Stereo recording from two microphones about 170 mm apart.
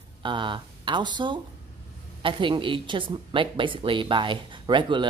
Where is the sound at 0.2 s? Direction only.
30° right (ahead or behind).